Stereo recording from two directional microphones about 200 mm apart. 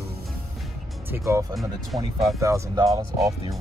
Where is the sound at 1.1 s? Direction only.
10° right (ahead or behind).